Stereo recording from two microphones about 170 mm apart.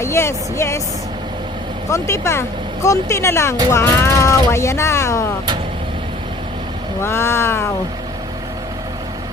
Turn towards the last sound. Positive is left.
turn(degrees=15)  # may be behind; listen again after turning